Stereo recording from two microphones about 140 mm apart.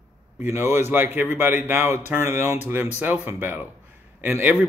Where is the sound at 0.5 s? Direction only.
15° right (ahead or behind).